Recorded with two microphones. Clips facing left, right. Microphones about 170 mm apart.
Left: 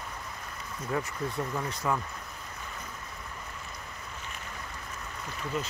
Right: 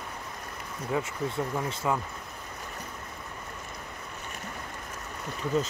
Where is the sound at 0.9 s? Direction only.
15° right (ahead or behind).